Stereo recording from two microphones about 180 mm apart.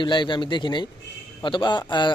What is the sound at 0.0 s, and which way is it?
A man's voice, 25° left (ahead or behind).